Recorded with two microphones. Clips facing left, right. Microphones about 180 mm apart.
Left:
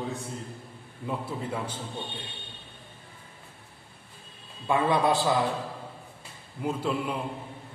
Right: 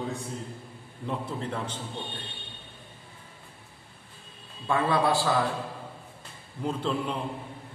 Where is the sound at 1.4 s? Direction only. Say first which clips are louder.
Even; 10° left (ahead or behind).